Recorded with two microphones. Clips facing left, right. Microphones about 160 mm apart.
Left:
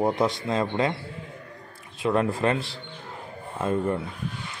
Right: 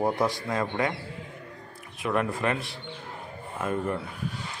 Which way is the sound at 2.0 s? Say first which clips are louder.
Left 4 dB; 30° left (ahead or behind).